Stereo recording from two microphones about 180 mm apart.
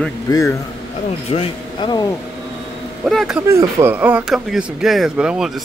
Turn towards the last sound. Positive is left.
turn(degrees=-5)  # may be behind; listen again after turning